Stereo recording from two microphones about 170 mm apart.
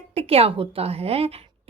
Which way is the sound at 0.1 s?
35° right (ahead or behind).